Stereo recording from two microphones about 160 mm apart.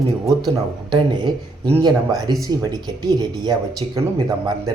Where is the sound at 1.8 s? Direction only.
25° right (ahead or behind).